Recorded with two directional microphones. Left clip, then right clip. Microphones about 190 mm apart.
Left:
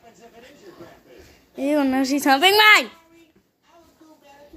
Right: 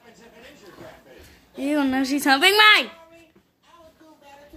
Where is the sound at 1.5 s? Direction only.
5° left (ahead or behind).